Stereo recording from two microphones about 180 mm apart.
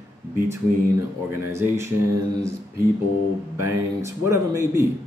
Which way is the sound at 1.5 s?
15° right (ahead or behind).